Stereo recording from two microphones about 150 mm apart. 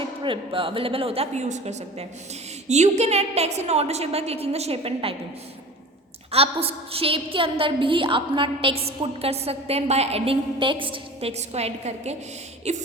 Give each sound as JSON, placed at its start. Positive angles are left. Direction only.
{"t": 0.2, "sound": "a woman's voice", "side_deg": -35}
{"t": 6.3, "sound": "a woman's voice", "side_deg": -40}